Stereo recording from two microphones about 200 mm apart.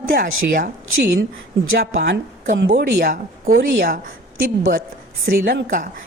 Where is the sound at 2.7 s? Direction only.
40° right (ahead or behind).